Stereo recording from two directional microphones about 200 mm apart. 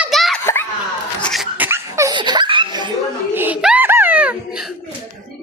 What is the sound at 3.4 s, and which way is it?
Laughter, 5° right (ahead or behind).